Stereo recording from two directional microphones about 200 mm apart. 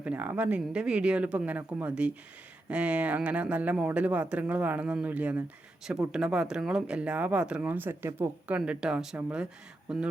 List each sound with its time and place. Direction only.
0.0 s speech: 5° right (ahead or behind)